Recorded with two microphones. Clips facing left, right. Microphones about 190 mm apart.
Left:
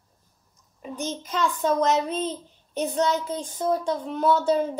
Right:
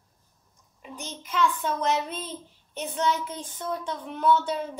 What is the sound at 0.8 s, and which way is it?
Speech, 40° left (ahead or behind).